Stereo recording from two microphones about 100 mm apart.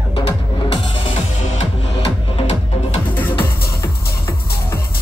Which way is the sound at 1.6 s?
70° left (ahead or behind).